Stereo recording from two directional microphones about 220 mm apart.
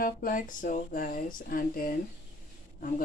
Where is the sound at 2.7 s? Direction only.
40° left (ahead or behind).